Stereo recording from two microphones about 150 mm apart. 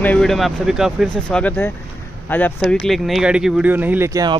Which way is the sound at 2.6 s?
Centre (ahead or behind).